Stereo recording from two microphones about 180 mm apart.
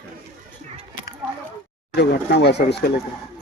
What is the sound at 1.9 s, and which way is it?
Speech, 70° left (ahead or behind).